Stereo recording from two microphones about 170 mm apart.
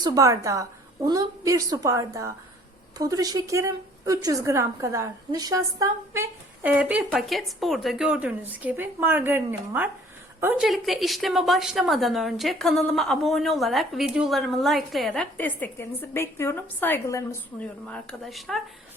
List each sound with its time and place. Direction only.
0.0 s a woman's voice: 20° right (ahead or behind); by 17.7 s 15° left (ahead or behind)
17.8 s a woman's voice: 5° left (ahead or behind)